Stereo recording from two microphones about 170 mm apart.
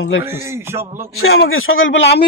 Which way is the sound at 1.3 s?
80° left.